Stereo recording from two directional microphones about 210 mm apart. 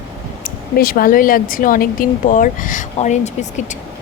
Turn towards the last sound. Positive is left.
turn(degrees=35)  # may be behind; listen again after turning